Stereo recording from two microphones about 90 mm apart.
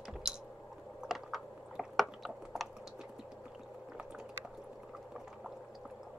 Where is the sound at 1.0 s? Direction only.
5° right (ahead or behind).